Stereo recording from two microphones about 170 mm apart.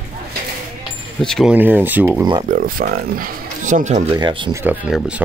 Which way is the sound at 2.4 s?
55° right (ahead or behind).